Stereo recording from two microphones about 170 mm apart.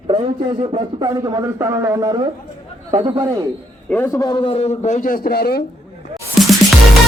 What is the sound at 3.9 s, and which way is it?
A man's voice, 15° left (ahead or behind).